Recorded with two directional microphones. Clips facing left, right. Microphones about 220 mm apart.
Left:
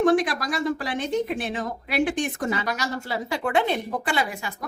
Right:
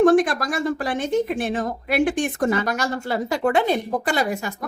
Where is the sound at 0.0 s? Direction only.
50° right (ahead or behind).